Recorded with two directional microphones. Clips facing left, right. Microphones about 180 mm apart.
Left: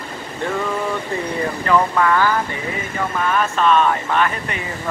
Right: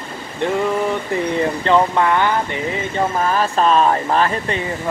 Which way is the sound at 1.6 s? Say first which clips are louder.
Even; 25° right (ahead or behind).